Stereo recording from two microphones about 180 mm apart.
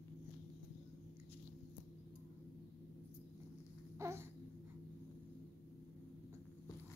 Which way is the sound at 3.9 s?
15° right (ahead or behind).